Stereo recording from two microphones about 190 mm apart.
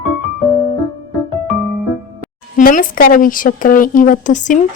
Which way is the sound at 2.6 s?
45° left (ahead or behind).